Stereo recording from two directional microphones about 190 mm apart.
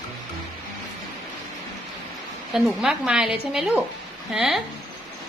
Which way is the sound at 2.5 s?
Centre (ahead or behind).